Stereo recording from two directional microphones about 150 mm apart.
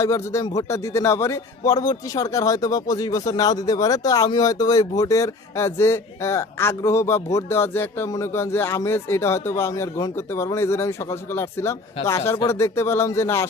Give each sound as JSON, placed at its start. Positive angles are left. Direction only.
{"t": 0.0, "sound": "a man's voice", "side_deg": 20}